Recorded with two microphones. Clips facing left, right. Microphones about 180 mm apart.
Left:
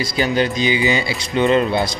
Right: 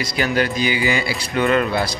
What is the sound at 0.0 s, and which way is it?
Speech, 25° left (ahead or behind).